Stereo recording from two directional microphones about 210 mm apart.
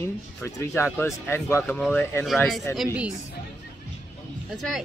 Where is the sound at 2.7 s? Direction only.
5° right (ahead or behind).